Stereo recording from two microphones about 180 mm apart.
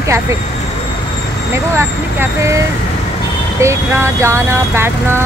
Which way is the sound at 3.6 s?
15° right (ahead or behind).